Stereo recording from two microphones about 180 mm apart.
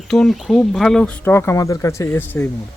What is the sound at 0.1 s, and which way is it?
Speech, centre (ahead or behind).